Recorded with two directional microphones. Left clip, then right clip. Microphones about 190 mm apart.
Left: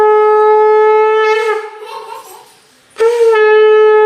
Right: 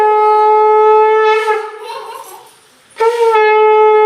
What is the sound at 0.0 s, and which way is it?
Shofar, 35° left (ahead or behind).